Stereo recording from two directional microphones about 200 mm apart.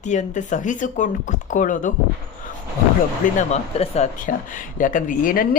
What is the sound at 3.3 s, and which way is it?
Speech, 35° left (ahead or behind).